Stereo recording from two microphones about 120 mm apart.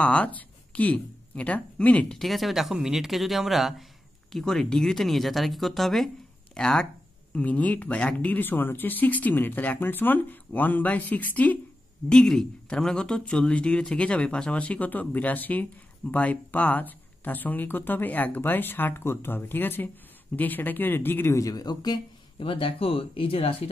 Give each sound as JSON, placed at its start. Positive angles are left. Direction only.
{"t": 0.0, "sound": "speech", "side_deg": 10}